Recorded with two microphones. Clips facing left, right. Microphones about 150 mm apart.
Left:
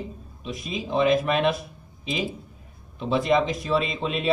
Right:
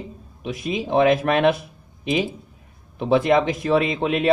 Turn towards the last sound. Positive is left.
turn(degrees=-60)  # may be behind; listen again after turning